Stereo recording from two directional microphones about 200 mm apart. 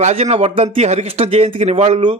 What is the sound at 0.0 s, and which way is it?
Speech, 30° right (ahead or behind).